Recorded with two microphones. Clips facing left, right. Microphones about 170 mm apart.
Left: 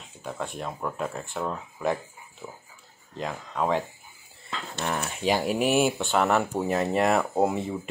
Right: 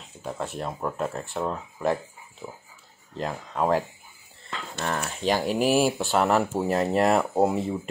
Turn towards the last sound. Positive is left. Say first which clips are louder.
# right 2 dB
turn(degrees=0)  # may be behind; listen again after turning